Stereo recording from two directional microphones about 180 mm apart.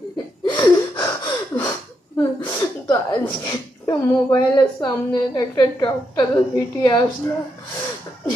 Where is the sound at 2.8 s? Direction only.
25° left (ahead or behind).